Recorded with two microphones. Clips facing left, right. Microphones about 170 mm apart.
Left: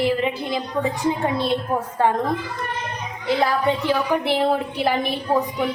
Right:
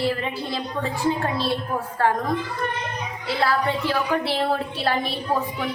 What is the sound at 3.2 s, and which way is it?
A woman's voice, 15° left (ahead or behind).